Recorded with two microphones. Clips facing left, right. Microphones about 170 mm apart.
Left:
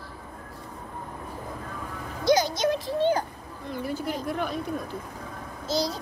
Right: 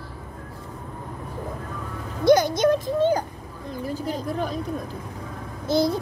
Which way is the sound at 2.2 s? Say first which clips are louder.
Right 5 dB; 55° right (ahead or behind).